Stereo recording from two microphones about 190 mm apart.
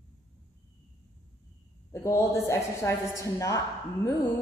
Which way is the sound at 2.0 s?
15° left (ahead or behind).